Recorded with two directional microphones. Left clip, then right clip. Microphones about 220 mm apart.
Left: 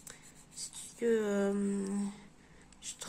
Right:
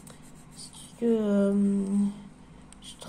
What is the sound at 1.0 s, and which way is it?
A woman's voice, 25° left (ahead or behind).